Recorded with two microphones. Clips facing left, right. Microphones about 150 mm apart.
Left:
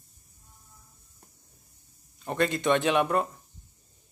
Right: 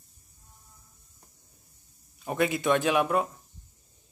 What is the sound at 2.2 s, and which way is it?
Speech, 5° right (ahead or behind).